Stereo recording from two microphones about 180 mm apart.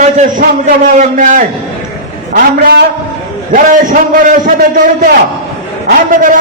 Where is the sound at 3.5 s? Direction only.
45° right (ahead or behind).